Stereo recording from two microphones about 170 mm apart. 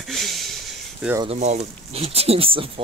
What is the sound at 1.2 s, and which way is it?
Speech, 40° right (ahead or behind).